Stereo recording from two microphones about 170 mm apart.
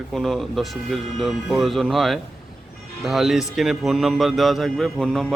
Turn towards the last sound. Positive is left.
turn(degrees=5)  # may be behind; listen again after turning